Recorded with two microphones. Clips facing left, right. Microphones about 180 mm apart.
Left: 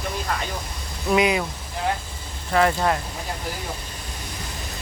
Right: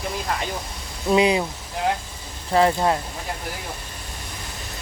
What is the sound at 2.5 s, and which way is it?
Speech, 25° right (ahead or behind).